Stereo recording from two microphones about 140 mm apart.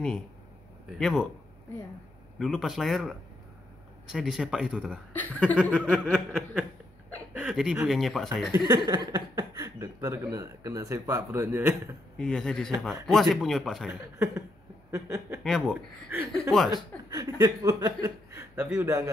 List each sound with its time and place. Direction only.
0.9 s speech: 5° left (ahead or behind)
2.3 s speech: centre (ahead or behind)
5.1 s speech: 10° left (ahead or behind)
8.6 s speech: 30° right (ahead or behind)
12.2 s speech: 5° left (ahead or behind)
14.1 s speech: 20° right (ahead or behind)
15.4 s speech: centre (ahead or behind)
15.7 s speech: 15° right (ahead or behind)
16.7 s speech: 30° right (ahead or behind)